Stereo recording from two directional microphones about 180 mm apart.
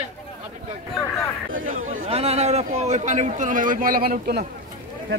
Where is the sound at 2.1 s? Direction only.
35° right (ahead or behind).